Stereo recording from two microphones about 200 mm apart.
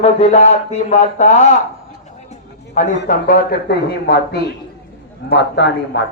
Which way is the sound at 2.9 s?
45° left (ahead or behind).